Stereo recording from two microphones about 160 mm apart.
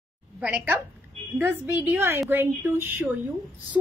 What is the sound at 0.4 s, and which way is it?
A woman's voice, 10° right (ahead or behind).